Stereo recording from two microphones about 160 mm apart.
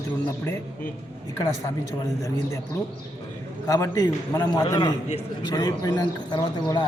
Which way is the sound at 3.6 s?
20° left (ahead or behind).